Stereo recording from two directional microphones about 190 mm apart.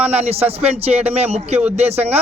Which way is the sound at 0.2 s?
30° right (ahead or behind).